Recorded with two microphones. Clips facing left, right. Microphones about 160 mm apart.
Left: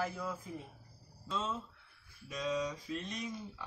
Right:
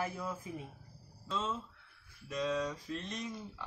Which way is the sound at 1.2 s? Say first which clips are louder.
Right 1 dB; 5° left (ahead or behind).